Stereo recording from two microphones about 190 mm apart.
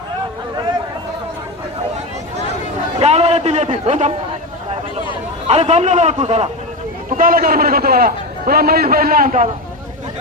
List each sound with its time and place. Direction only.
3.0 s a man's voice: 35° right (ahead or behind)
5.5 s a man's voice: 35° right (ahead or behind)
7.2 s a man's voice: 50° right (ahead or behind)